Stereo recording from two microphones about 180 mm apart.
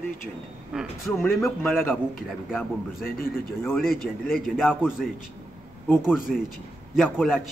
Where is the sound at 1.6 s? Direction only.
10° left (ahead or behind).